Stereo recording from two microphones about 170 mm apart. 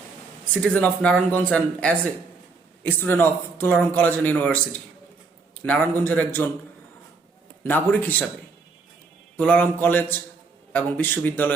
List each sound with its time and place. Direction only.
0.6 s speech: 5° left (ahead or behind)
5.6 s speech: 10° left (ahead or behind)
7.6 s speech: 10° left (ahead or behind)
9.4 s speech: 5° left (ahead or behind)